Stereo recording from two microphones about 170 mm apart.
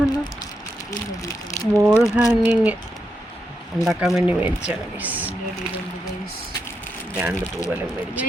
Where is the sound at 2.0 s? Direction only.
Centre (ahead or behind).